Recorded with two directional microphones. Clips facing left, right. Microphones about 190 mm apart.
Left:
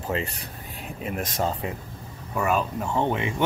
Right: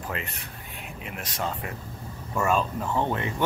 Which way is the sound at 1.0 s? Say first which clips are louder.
Left 6 dB; 45° left (ahead or behind).